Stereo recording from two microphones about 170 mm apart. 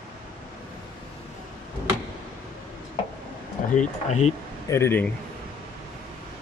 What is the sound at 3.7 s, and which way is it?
Speech, 40° left (ahead or behind).